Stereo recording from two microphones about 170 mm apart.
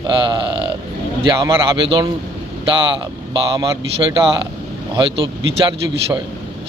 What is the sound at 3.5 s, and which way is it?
Speech, 25° right (ahead or behind).